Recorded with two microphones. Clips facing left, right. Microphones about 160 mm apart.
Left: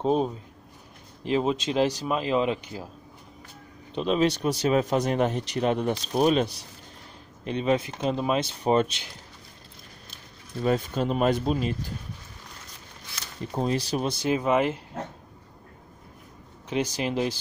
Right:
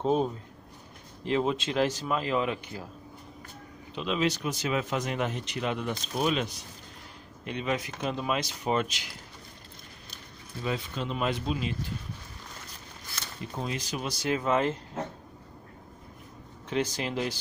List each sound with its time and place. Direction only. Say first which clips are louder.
0.0 s speech: left 2 dB; 15° left (ahead or behind)
3.9 s speech: left 5 dB; 35° left (ahead or behind)
10.6 s speech: left 8 dB; 45° left (ahead or behind)
13.5 s speech: left 8 dB; 35° left (ahead or behind)
14.2 s speech: left 2 dB; 15° left (ahead or behind)
16.6 s speech: left 3 dB; 15° left (ahead or behind)